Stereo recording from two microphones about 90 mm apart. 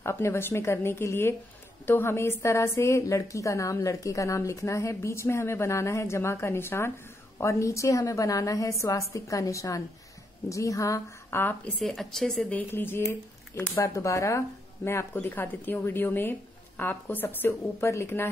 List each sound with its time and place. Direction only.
0.0 s a woman's voice: 30° left (ahead or behind)
11.8 s a woman's voice: centre (ahead or behind)
12.5 s a woman's voice: 25° left (ahead or behind)
15.2 s a woman's voice: 20° left (ahead or behind)